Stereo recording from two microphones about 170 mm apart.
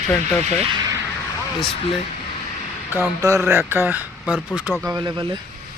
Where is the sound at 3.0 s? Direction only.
20° right (ahead or behind).